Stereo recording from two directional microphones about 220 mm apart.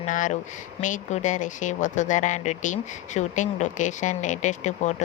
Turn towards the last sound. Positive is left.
turn(degrees=35)  # may be behind; listen again after turning